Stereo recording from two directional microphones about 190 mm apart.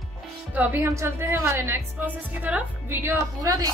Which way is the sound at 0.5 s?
10° right (ahead or behind).